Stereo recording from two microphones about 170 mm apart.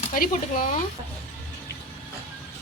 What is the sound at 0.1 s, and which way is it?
Speech, 50° left (ahead or behind).